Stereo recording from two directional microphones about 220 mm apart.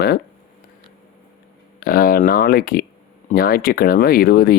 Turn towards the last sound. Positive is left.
turn(degrees=45)  # may be behind; listen again after turning